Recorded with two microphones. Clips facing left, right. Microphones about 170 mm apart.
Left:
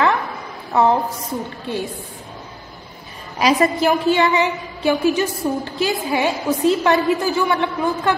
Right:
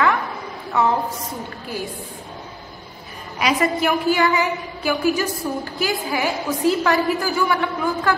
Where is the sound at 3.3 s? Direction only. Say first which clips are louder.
Left 3 dB; 30° left (ahead or behind).